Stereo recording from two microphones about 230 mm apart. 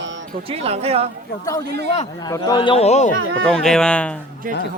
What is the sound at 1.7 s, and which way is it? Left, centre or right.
Speech, right.